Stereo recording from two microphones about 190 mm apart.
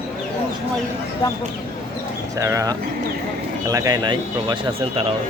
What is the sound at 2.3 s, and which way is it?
Speech, 15° right (ahead or behind).